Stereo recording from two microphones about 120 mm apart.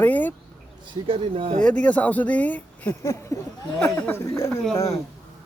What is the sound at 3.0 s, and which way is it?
Speech, 25° left (ahead or behind).